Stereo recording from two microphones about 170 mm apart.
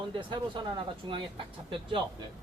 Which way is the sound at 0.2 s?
30° right (ahead or behind).